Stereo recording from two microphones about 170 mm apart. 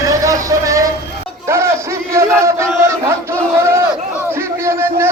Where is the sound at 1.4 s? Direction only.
15° right (ahead or behind).